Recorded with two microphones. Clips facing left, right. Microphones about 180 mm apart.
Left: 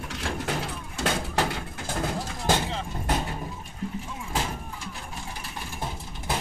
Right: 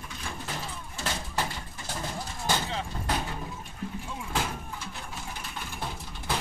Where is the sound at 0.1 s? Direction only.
80° left.